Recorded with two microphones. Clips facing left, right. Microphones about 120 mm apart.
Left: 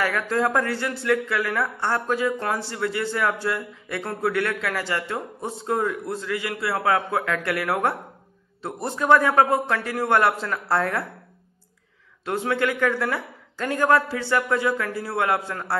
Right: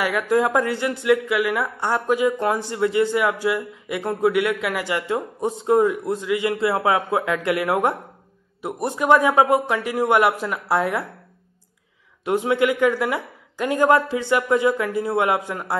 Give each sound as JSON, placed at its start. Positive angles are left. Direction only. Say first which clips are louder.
{"t": 0.0, "sound": "speech", "louder": "right 3 dB", "side_deg": -15}
{"t": 12.3, "sound": "speech", "louder": "right 4 dB", "side_deg": -15}